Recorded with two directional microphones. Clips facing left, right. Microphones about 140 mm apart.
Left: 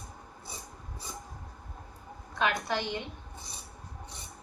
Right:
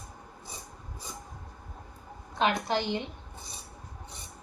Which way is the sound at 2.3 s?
25° right (ahead or behind).